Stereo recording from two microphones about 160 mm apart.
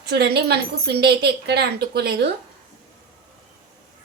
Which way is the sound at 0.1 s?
85° right.